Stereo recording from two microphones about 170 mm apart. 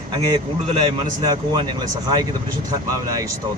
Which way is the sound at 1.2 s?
25° right (ahead or behind).